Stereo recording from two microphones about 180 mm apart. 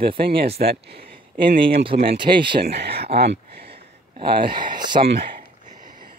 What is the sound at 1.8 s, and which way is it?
Speech, 30° right (ahead or behind).